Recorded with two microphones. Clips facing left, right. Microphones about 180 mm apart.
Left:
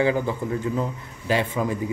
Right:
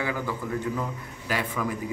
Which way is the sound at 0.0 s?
25° left (ahead or behind).